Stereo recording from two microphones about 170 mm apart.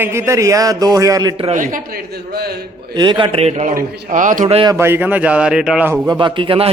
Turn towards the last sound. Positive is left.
turn(degrees=-30)  # may be behind; listen again after turning